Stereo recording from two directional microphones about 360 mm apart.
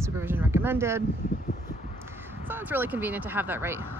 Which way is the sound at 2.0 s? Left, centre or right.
Centre.